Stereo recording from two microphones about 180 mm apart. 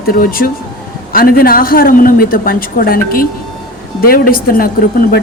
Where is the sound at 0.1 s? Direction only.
55° left (ahead or behind).